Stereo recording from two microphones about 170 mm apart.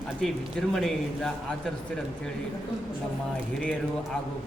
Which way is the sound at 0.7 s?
Centre (ahead or behind).